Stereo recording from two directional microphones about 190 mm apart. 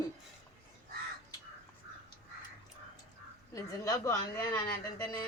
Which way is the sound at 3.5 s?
20° left (ahead or behind).